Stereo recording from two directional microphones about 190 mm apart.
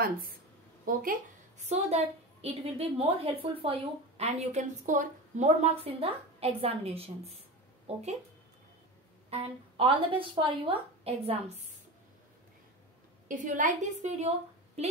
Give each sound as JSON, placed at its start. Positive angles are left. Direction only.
{"t": 0.8, "sound": "speech", "side_deg": -45}
{"t": 1.7, "sound": "a woman's voice", "side_deg": -35}
{"t": 9.3, "sound": "a woman's voice", "side_deg": -30}
{"t": 13.3, "sound": "a woman's voice", "side_deg": -45}